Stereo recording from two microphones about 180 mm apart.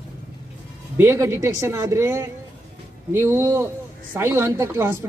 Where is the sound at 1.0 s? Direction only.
15° right (ahead or behind).